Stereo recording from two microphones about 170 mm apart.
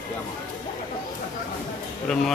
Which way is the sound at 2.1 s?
5° left (ahead or behind).